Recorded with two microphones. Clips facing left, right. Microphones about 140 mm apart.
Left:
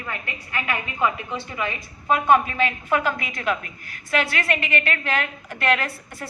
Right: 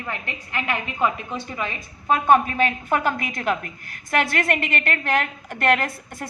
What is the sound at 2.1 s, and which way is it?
A woman's voice, 40° right (ahead or behind).